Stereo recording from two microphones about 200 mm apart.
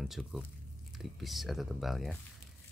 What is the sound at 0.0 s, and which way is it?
Speech, centre (ahead or behind).